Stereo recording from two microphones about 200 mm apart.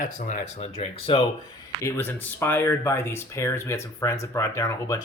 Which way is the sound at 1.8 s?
10° left (ahead or behind).